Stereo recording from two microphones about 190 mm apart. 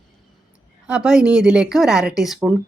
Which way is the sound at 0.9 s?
5° right (ahead or behind).